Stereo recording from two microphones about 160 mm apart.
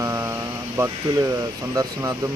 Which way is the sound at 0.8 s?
15° right (ahead or behind).